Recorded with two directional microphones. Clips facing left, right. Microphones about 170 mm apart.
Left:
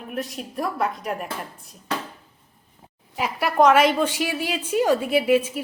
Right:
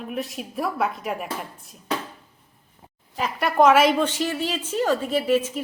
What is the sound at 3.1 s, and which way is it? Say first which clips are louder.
Speech: even; 5° left (ahead or behind).